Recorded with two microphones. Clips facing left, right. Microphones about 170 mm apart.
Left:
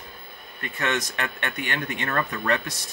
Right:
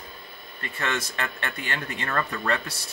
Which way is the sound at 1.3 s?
65° left (ahead or behind).